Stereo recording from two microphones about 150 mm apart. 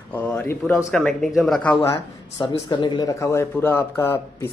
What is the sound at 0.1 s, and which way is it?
Speech, 10° left (ahead or behind).